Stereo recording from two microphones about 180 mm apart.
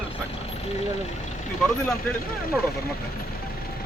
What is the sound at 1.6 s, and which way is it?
Speech, 5° left (ahead or behind).